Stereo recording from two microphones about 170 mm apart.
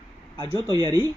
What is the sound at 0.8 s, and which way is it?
Speech, 20° right (ahead or behind).